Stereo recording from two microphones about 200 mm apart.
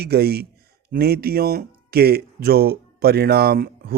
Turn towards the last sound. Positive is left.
turn(degrees=-50)  # may be behind; listen again after turning